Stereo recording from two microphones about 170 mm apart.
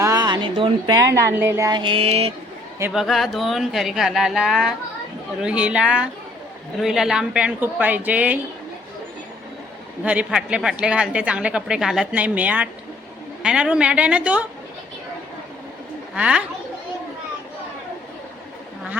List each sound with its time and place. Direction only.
0.0 s a sound: 20° right (ahead or behind)
1.1 s speech: 15° right (ahead or behind); by 2.3 s 35° right (ahead or behind)
2.9 s a woman's voice: centre (ahead or behind)
10.0 s a woman's voice: 5° right (ahead or behind)
16.1 s speech: 5° right (ahead or behind)